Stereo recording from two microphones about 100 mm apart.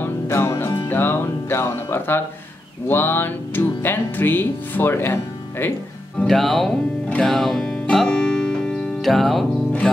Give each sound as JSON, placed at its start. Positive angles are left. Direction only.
{"t": 0.0, "sound": "music", "side_deg": 25}
{"t": 2.9, "sound": "speech", "side_deg": 20}
{"t": 6.2, "sound": "speech", "side_deg": 0}
{"t": 7.1, "sound": "music", "side_deg": 5}